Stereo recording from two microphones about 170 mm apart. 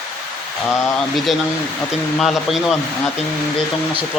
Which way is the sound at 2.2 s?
Centre (ahead or behind).